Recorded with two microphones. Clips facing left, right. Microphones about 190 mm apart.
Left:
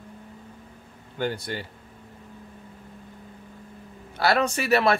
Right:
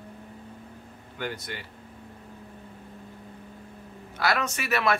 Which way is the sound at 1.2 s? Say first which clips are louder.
Left 6 dB; 30° left (ahead or behind).